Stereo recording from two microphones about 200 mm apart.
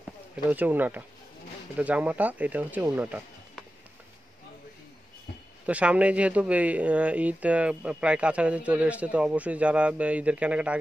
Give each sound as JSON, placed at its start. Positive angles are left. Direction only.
{"t": 0.5, "sound": "speech", "side_deg": -10}
{"t": 5.7, "sound": "speech", "side_deg": -5}